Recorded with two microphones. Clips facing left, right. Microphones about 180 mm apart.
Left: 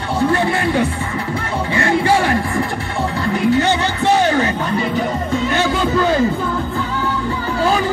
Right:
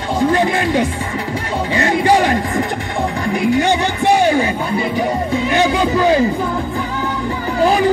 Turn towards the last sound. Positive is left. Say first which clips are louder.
# right 3 dB
turn(degrees=-15)  # may be behind; listen again after turning